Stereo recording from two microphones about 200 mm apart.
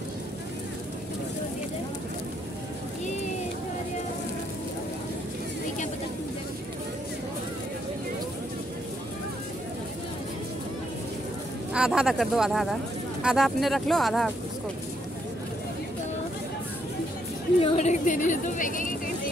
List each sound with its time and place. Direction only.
11.7 s speech: 5° right (ahead or behind)
17.6 s speech: 30° left (ahead or behind)